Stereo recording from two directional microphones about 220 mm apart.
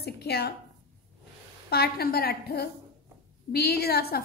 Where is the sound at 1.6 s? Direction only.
45° left (ahead or behind).